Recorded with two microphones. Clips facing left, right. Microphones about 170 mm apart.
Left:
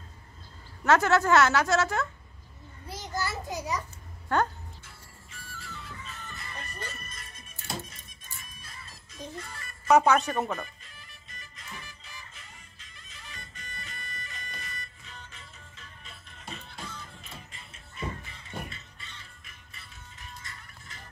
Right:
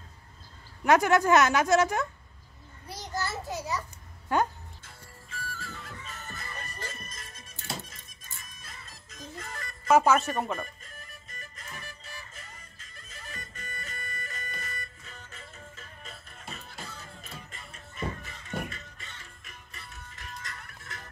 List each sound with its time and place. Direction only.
0.8 s a woman's voice: 15° right (ahead or behind)
2.9 s a sound: 15° right (ahead or behind)
3.3 s a sound: 15° left (ahead or behind)
4.3 s speech: 10° right (ahead or behind)
5.7 s music: 45° right (ahead or behind)
9.4 s music: 45° right (ahead or behind)
9.8 s speech: centre (ahead or behind)
10.9 s music: 45° right (ahead or behind)
20.2 s music: 75° right (ahead or behind)